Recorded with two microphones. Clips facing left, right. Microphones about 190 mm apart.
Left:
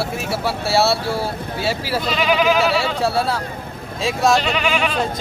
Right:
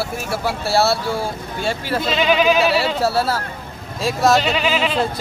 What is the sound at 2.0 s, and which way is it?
Speech, 25° right (ahead or behind).